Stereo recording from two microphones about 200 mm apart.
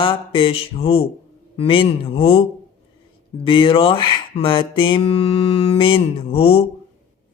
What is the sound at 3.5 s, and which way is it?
Mantra, 25° left (ahead or behind).